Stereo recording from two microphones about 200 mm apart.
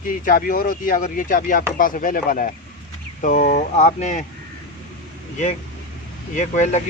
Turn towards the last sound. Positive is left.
turn(degrees=40)  # may be behind; listen again after turning